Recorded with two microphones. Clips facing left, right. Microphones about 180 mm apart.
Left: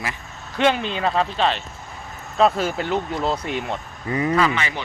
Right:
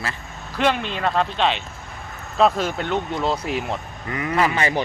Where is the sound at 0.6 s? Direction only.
Centre (ahead or behind).